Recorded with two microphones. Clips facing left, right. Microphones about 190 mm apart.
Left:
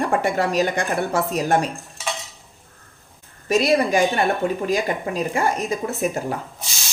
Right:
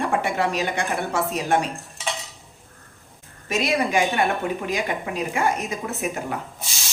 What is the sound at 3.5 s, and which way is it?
Speech, 35° left (ahead or behind).